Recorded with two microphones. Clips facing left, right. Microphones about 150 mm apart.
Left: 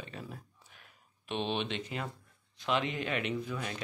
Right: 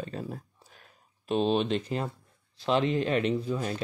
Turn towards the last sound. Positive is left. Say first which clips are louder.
# right 7 dB
turn(degrees=-30)  # may be behind; listen again after turning